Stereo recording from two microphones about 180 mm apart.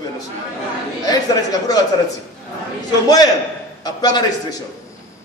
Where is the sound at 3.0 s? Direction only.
20° left (ahead or behind).